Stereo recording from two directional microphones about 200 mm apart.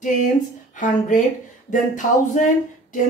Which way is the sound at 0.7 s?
40° left (ahead or behind).